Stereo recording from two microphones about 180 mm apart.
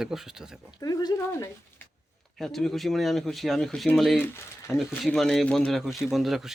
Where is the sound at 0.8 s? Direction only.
20° left (ahead or behind).